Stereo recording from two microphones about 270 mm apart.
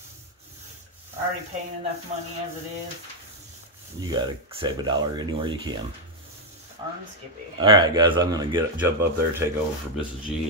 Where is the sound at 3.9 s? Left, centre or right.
Centre.